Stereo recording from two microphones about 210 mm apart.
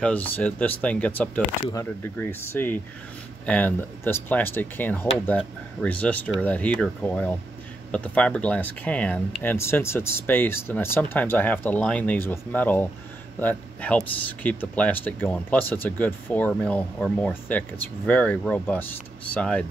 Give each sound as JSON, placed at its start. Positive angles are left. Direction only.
{"t": 0.0, "sound": "speech", "side_deg": 5}